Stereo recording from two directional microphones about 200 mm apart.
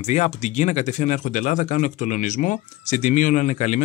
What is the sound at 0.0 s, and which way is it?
Speech, 35° left (ahead or behind).